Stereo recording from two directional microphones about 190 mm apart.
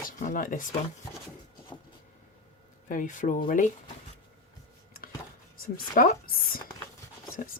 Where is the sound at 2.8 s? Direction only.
45° left (ahead or behind).